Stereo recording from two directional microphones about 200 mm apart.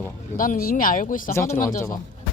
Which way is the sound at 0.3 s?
45° left (ahead or behind).